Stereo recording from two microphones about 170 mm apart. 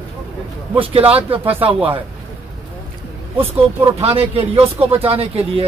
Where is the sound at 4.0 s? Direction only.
35° right (ahead or behind).